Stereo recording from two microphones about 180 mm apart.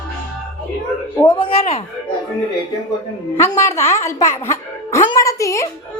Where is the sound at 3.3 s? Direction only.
15° left (ahead or behind).